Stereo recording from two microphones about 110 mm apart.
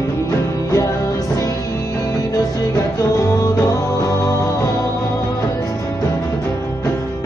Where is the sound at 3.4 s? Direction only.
30° left (ahead or behind).